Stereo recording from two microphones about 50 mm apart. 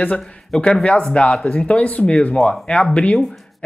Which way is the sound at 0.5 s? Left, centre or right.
Centre.